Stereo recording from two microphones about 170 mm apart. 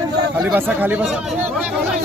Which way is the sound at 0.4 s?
10° right (ahead or behind).